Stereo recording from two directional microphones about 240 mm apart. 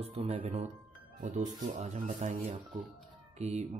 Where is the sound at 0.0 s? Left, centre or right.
Right.